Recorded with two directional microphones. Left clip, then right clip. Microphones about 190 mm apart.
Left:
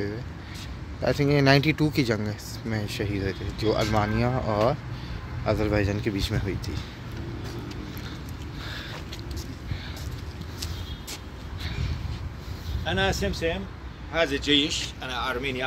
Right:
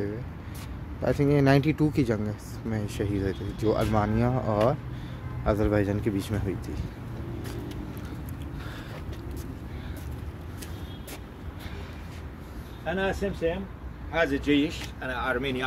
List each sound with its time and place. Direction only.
1.0 s speech: 5° right (ahead or behind)
12.8 s speech: 15° left (ahead or behind)
14.1 s speech: 25° right (ahead or behind)
14.4 s speech: 45° right (ahead or behind)